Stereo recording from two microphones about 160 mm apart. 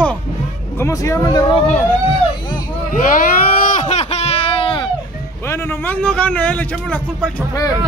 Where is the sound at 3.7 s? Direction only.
45° left (ahead or behind).